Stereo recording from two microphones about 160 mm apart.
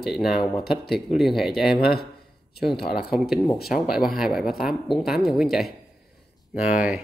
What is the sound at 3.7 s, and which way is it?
Speech, centre (ahead or behind).